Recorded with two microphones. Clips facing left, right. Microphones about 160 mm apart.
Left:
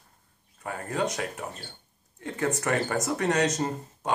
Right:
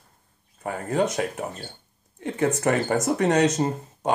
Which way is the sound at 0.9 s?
25° right (ahead or behind).